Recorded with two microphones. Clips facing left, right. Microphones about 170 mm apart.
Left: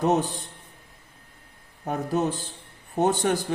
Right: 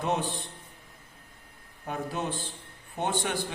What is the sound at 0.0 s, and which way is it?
Speech, 40° left (ahead or behind).